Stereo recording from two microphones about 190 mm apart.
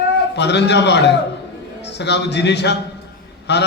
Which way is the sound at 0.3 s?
65° left (ahead or behind).